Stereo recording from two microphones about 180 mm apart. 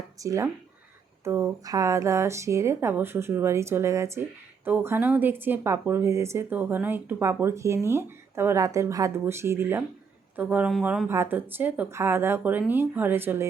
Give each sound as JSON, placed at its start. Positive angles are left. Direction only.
{"t": 0.2, "sound": "speech", "side_deg": -15}
{"t": 11.1, "sound": "speech", "side_deg": -15}